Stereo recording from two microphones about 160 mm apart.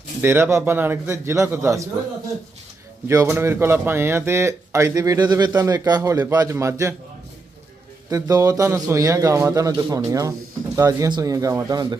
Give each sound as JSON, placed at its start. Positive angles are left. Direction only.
{"t": 0.2, "sound": "speech", "side_deg": -15}
{"t": 3.1, "sound": "a man's voice", "side_deg": -20}
{"t": 8.1, "sound": "a man's voice", "side_deg": -20}